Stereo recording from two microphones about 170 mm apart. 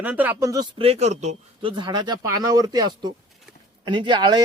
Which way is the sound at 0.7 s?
35° right (ahead or behind).